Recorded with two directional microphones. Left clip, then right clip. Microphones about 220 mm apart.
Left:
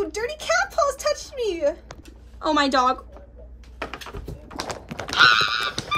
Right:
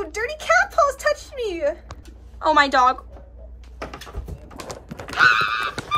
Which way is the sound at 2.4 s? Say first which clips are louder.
Right 4 dB; 25° left (ahead or behind).